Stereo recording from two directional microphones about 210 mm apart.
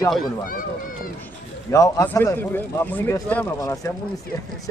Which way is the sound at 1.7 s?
15° left (ahead or behind).